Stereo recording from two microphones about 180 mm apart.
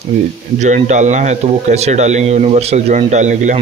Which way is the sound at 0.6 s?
40° right (ahead or behind).